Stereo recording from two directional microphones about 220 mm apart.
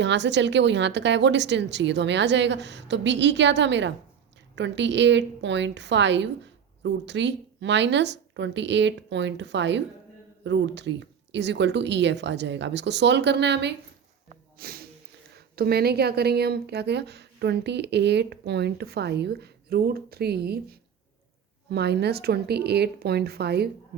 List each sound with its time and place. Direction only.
0.0 s speech: 55° right (ahead or behind)